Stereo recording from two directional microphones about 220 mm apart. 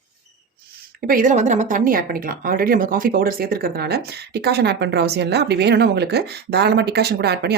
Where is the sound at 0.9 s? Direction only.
40° right (ahead or behind).